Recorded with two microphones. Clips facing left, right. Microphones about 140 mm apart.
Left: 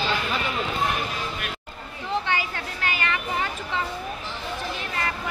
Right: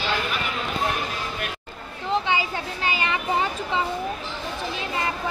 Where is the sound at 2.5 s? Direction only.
20° right (ahead or behind).